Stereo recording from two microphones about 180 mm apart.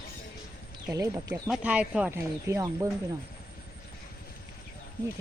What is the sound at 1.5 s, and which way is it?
Speech, 5° right (ahead or behind).